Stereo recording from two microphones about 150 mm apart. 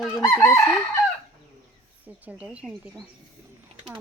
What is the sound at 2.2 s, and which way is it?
Speech, 10° right (ahead or behind).